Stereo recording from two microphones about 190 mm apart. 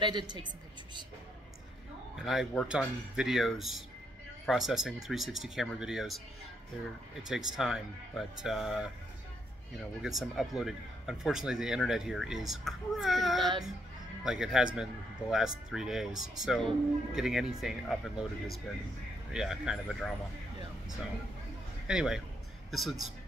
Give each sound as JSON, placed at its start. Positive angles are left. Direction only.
{"t": 0.0, "sound": "speech", "side_deg": -25}
{"t": 2.1, "sound": "speech", "side_deg": 0}
{"t": 7.2, "sound": "speech", "side_deg": -5}
{"t": 10.0, "sound": "speech", "side_deg": 0}
{"t": 21.8, "sound": "speech", "side_deg": -5}